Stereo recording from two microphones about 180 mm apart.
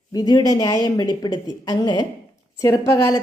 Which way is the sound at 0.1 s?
20° left (ahead or behind).